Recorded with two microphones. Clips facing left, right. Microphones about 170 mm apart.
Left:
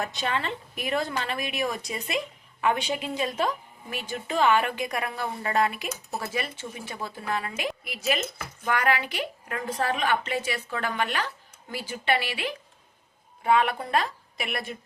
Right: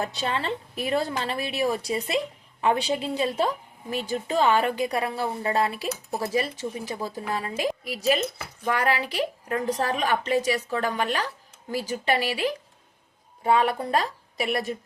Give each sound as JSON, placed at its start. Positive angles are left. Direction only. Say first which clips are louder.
{"t": 0.0, "sound": "a woman's voice", "louder": "right 1 dB", "side_deg": -30}